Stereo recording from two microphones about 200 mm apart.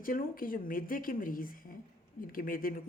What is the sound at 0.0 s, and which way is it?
Speech, 45° left (ahead or behind).